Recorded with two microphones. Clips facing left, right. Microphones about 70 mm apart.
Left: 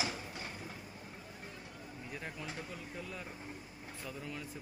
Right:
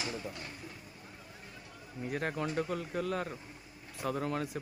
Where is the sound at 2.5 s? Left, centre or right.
Right.